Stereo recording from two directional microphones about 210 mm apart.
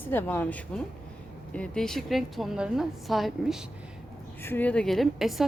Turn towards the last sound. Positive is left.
turn(degrees=0)  # may be behind; listen again after turning